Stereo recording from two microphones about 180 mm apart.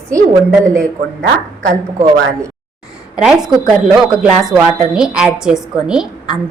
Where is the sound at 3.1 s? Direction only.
5° right (ahead or behind).